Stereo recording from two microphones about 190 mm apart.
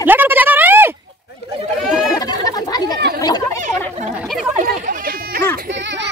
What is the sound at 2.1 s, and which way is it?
Chatter, 20° left (ahead or behind).